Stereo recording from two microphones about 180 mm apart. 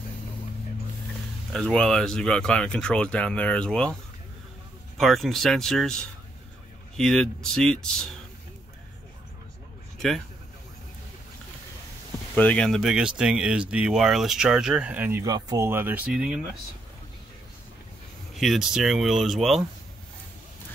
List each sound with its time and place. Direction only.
1.5 s speech: 5° left (ahead or behind)
4.9 s speech: centre (ahead or behind)
9.9 s speech: centre (ahead or behind)
12.4 s speech: 5° left (ahead or behind)
18.3 s speech: centre (ahead or behind)